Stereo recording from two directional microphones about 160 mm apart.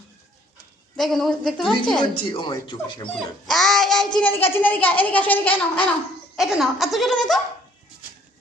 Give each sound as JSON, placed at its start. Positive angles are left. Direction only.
{"t": 0.9, "sound": "speech", "side_deg": 0}
{"t": 2.0, "sound": "speech", "side_deg": 35}
{"t": 3.1, "sound": "dog", "side_deg": 0}
{"t": 4.2, "sound": "a woman's voice", "side_deg": 10}
{"t": 6.3, "sound": "speech", "side_deg": 0}